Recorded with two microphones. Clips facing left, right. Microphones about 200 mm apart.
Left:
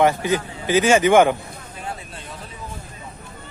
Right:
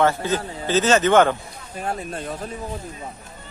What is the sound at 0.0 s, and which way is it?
A man's voice, 15° left (ahead or behind).